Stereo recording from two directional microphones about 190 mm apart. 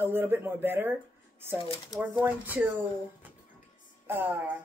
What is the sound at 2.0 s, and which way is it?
Speech, 10° right (ahead or behind).